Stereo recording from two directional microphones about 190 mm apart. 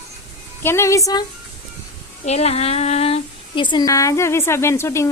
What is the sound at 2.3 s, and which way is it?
Speech, 35° left (ahead or behind).